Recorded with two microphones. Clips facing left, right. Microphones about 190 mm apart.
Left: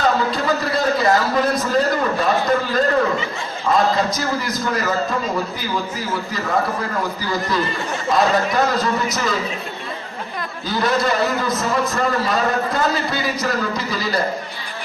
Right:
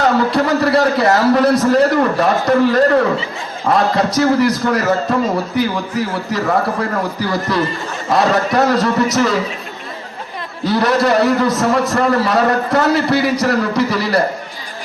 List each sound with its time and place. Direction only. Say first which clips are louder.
0.0 s a man's voice: right 5 dB; 70° right (ahead or behind)
10.6 s a man's voice: right 6 dB; 70° right (ahead or behind)